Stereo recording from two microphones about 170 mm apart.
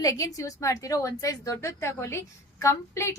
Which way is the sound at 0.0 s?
20° left (ahead or behind).